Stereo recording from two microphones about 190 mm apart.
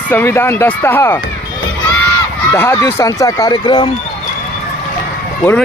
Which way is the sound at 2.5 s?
10° left (ahead or behind).